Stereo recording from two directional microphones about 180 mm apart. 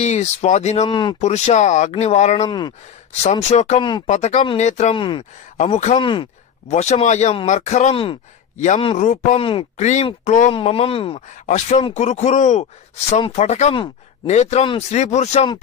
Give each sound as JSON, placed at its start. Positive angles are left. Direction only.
{"t": 0.0, "sound": "speech", "side_deg": 40}
{"t": 1.2, "sound": "speech", "side_deg": 40}
{"t": 2.4, "sound": "speech", "side_deg": 25}
{"t": 3.2, "sound": "speech", "side_deg": 40}
{"t": 5.9, "sound": "speech", "side_deg": 25}
{"t": 6.7, "sound": "speech", "side_deg": 40}